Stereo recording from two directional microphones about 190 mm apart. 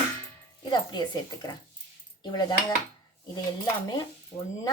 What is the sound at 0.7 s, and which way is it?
A woman's voice, 20° left (ahead or behind).